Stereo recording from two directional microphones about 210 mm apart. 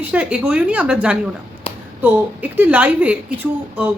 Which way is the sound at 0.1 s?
5° right (ahead or behind).